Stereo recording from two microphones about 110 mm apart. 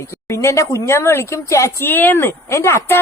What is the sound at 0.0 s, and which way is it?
Speech, 25° left (ahead or behind).